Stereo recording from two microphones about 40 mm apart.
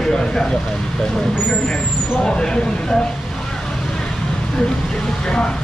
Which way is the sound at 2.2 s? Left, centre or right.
Centre.